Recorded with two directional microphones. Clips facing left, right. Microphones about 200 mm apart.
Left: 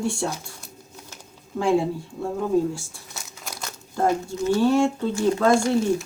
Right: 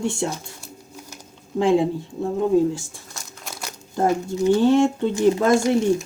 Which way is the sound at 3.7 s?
20° right (ahead or behind).